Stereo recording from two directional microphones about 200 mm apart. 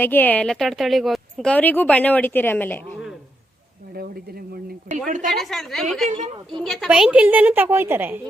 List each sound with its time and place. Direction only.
0.0 s speech: 10° left (ahead or behind)
3.9 s a woman's voice: 45° right (ahead or behind)
5.4 s a woman's voice: centre (ahead or behind)
6.1 s a woman's voice: 35° right (ahead or behind)
6.6 s a woman's voice: centre (ahead or behind)